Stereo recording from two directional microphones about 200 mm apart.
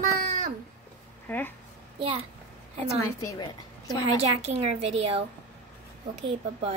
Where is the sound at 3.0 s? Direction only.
15° left (ahead or behind).